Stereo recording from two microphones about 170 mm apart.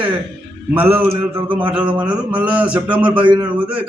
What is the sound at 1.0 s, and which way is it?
A man's voice, 10° right (ahead or behind).